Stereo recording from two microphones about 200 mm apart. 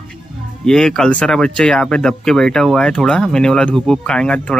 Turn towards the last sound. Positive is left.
turn(degrees=5)  # may be behind; listen again after turning